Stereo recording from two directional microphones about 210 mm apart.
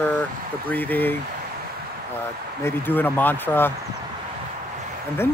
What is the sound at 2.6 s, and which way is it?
Speech, 10° left (ahead or behind).